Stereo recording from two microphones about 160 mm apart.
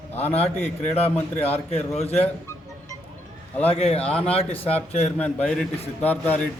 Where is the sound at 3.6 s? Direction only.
35° left (ahead or behind).